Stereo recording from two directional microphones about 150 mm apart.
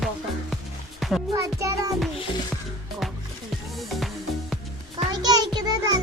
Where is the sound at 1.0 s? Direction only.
Centre (ahead or behind).